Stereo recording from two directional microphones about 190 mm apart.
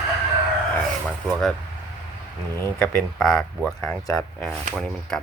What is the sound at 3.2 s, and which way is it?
Speech, centre (ahead or behind).